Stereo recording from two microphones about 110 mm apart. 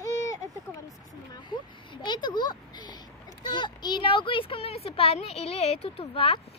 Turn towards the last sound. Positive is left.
turn(degrees=55)  # may be behind; listen again after turning